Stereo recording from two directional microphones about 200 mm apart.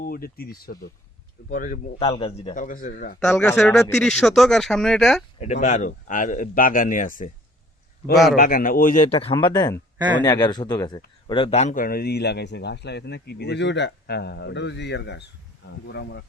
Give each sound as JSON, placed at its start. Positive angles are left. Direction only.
{"t": 0.0, "sound": "speech", "side_deg": 50}
{"t": 2.0, "sound": "speech", "side_deg": 25}
{"t": 3.2, "sound": "speech", "side_deg": 10}
{"t": 5.4, "sound": "speech", "side_deg": 35}
{"t": 8.4, "sound": "a man's voice", "side_deg": 45}